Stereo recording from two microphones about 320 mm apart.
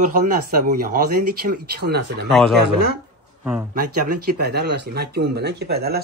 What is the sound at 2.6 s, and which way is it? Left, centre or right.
Speech, right.